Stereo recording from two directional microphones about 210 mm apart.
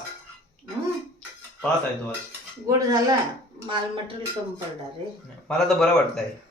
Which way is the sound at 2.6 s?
15° right (ahead or behind).